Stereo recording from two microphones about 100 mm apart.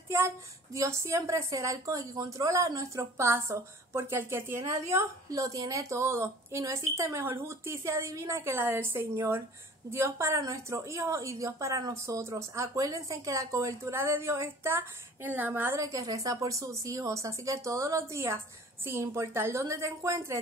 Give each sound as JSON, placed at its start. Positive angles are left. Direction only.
{"t": 0.7, "sound": "speech", "side_deg": -30}
{"t": 15.8, "sound": "speech", "side_deg": -35}